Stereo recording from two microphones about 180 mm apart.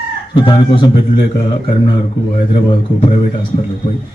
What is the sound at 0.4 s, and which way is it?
Speech, 25° left (ahead or behind).